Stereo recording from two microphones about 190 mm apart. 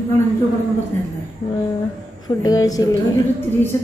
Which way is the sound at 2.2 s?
20° left (ahead or behind).